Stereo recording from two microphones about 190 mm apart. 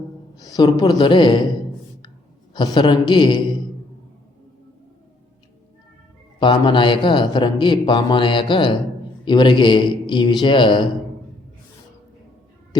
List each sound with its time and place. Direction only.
0.3 s a woman's voice: 20° left (ahead or behind)
2.5 s speech: 25° left (ahead or behind)
6.4 s speech: 25° left (ahead or behind)